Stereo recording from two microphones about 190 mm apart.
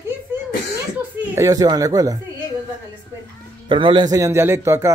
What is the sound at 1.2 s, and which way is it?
Speech, 15° right (ahead or behind).